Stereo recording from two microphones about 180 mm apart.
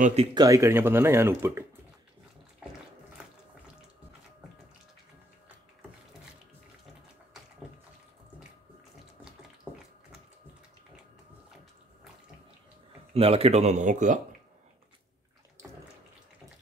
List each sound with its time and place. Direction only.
0.0 s speech: 35° right (ahead or behind)
0.4 s speech: 15° right (ahead or behind)
9.7 s a sound: 10° right (ahead or behind)
13.1 s speech: 35° right (ahead or behind)